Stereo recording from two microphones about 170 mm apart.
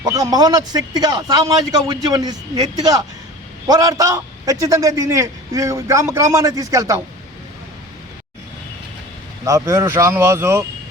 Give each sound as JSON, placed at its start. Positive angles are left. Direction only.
{"t": 0.0, "sound": "a man's voice", "side_deg": -20}
{"t": 9.4, "sound": "speech", "side_deg": -20}